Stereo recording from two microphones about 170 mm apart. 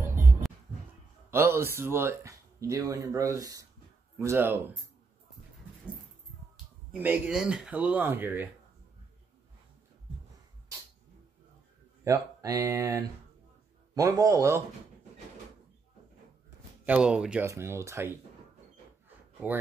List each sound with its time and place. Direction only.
1.3 s speech: 15° right (ahead or behind)
6.5 s speech: 10° right (ahead or behind)
12.0 s speech: 20° right (ahead or behind)
16.8 s speech: 5° right (ahead or behind)
19.0 s a sound: 10° right (ahead or behind)